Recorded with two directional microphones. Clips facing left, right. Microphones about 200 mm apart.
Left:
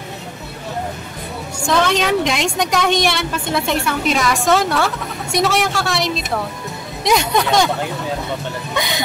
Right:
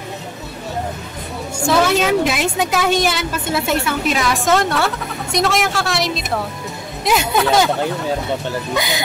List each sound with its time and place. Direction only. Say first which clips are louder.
1.7 s a woman's voice: right 1 dB; 5° right (ahead or behind)
8.7 s a woman's voice: left 1 dB; centre (ahead or behind)